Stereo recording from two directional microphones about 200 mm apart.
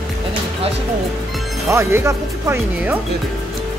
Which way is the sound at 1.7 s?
15° right (ahead or behind).